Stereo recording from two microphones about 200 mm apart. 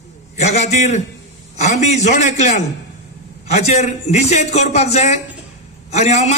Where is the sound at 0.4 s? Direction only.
35° left (ahead or behind).